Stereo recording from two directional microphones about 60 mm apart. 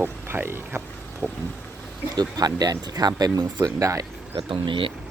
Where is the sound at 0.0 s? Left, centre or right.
Right.